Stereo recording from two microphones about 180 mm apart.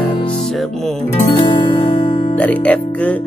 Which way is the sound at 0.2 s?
30° left (ahead or behind).